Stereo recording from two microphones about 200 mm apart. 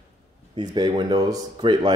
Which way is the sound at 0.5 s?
20° right (ahead or behind).